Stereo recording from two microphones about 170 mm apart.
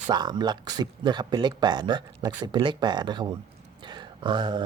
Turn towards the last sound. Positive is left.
turn(degrees=-30)  # may be behind; listen again after turning